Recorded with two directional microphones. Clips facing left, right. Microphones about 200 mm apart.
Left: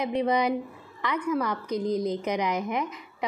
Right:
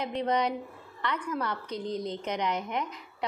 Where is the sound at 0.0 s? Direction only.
10° left (ahead or behind).